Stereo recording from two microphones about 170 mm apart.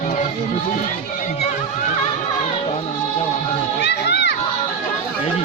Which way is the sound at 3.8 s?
80° left.